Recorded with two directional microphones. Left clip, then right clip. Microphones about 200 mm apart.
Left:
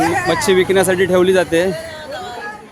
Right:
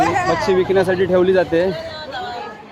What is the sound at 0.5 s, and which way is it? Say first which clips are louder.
Speech: left 4 dB; 35° left (ahead or behind).